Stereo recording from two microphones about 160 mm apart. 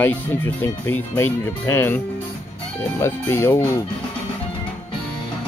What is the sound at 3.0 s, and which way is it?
Speech, 15° left (ahead or behind).